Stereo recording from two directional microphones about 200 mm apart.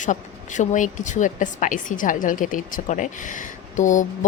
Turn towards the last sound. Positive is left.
turn(degrees=40)  # may be behind; listen again after turning